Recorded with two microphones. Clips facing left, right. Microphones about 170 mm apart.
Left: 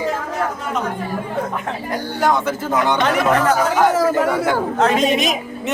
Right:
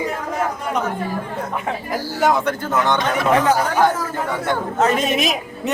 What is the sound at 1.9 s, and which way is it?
Speech, centre (ahead or behind).